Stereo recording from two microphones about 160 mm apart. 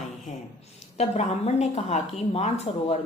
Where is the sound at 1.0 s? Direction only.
45° left (ahead or behind).